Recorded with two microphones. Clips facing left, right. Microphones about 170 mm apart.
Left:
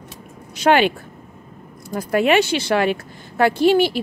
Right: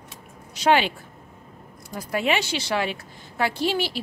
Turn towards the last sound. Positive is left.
turn(degrees=55)  # may be behind; listen again after turning